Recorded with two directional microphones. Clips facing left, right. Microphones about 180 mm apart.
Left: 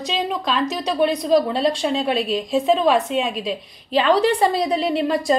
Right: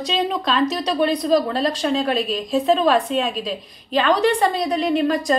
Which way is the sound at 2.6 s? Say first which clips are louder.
Right 1 dB; 10° left (ahead or behind).